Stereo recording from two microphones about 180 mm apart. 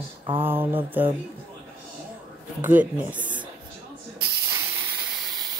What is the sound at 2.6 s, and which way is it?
Speech, 10° right (ahead or behind).